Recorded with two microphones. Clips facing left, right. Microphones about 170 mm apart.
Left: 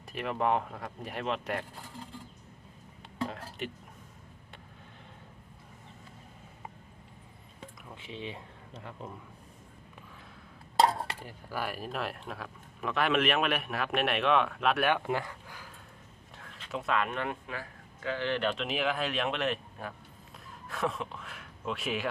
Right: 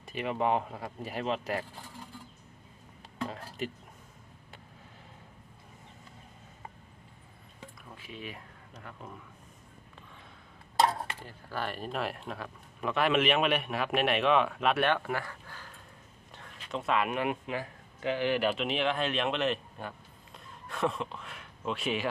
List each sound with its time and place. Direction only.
0.0 s speech: centre (ahead or behind)
3.2 s speech: centre (ahead or behind)
7.9 s speech: 25° left (ahead or behind)
11.2 s speech: 10° left (ahead or behind)
16.3 s a sound: centre (ahead or behind)
17.1 s speech: 15° right (ahead or behind)